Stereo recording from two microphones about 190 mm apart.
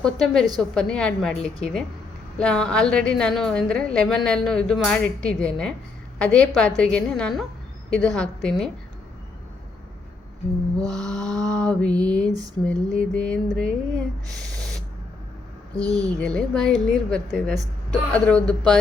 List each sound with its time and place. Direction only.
0.0 s a woman's voice: 5° left (ahead or behind)
10.8 s a woman's voice: 5° left (ahead or behind)
15.8 s speech: 20° right (ahead or behind)
16.2 s a woman's voice: 5° left (ahead or behind)